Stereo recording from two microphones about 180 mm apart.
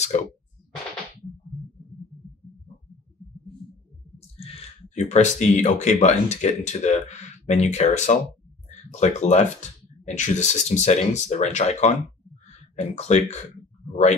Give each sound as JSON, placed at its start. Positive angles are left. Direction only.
{"t": 0.1, "sound": "speech", "side_deg": 45}
{"t": 4.4, "sound": "speech", "side_deg": 35}